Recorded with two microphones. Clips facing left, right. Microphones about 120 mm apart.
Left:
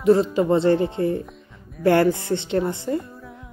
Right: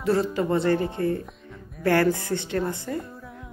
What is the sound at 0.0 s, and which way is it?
Speech, 25° left (ahead or behind).